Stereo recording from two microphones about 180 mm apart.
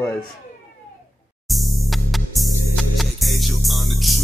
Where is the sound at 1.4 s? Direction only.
Centre (ahead or behind).